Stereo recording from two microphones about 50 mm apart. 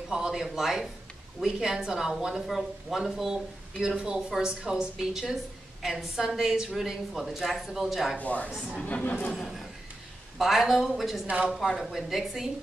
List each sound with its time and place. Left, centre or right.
0.1 s a woman's voice: centre
8.2 s speech: left
8.5 s a woman's voice: centre
8.8 s speech: left
10.3 s speech: centre
11.2 s speech: right
11.8 s speech: centre